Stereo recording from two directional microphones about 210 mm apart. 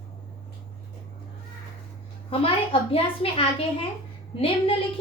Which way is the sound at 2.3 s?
25° left (ahead or behind).